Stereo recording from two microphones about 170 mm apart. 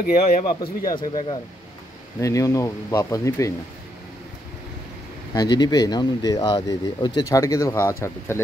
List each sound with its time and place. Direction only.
0.0 s speech: 60° left (ahead or behind)
2.1 s speech: 20° left (ahead or behind)
5.3 s speech: 25° left (ahead or behind)